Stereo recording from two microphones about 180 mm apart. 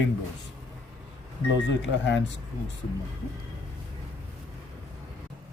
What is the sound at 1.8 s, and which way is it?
Speech, 90° left.